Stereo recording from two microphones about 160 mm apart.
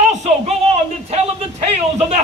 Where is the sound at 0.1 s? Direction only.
45° right (ahead or behind).